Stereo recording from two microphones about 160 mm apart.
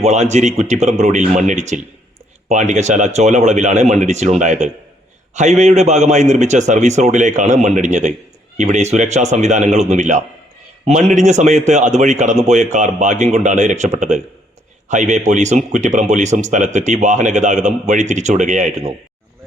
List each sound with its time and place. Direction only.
0.0 s speech: 45° right (ahead or behind)